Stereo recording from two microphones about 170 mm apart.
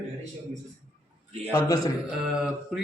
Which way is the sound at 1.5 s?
20° left (ahead or behind).